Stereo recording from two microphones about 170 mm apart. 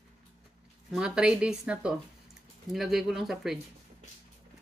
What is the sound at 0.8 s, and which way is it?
Speech, 5° right (ahead or behind).